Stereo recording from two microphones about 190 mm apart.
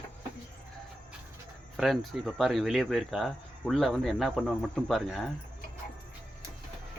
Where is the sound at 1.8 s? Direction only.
Centre (ahead or behind).